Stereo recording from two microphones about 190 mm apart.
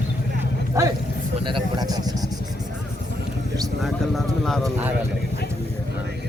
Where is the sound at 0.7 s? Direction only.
15° right (ahead or behind).